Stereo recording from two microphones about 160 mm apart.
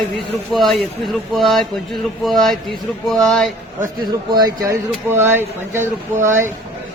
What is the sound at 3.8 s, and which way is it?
Speech, 25° right (ahead or behind).